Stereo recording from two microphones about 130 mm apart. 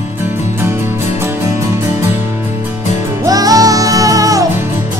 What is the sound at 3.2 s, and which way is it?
Music, 30° right (ahead or behind).